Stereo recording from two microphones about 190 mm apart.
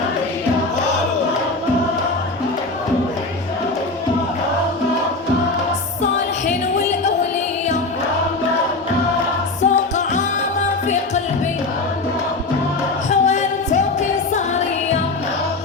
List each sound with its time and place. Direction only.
9.6 s music: 40° left (ahead or behind)
13.1 s music: 35° left (ahead or behind)